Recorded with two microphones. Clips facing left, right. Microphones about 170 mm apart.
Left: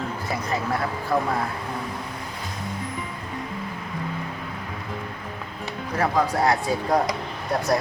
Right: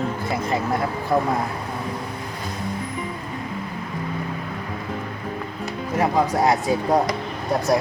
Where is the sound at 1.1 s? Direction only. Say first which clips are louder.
Right 3 dB; 20° right (ahead or behind).